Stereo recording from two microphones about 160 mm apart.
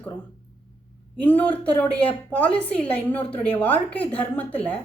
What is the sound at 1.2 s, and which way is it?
Speech, 10° left (ahead or behind).